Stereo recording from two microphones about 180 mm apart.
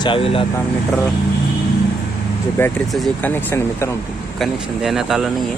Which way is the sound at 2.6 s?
10° left (ahead or behind).